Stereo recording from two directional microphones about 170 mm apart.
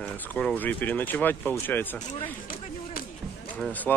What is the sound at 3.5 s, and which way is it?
Speech, 10° left (ahead or behind).